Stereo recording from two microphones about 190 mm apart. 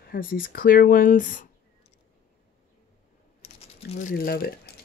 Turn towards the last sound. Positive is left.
turn(degrees=55)  # may be behind; listen again after turning